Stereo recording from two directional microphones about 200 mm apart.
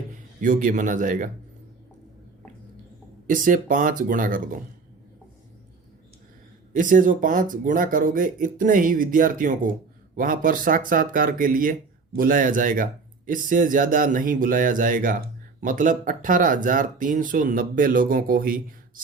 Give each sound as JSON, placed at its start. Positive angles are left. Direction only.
{"t": 0.1, "sound": "speech", "side_deg": -40}
{"t": 3.2, "sound": "speech", "side_deg": -40}
{"t": 6.7, "sound": "speech", "side_deg": -40}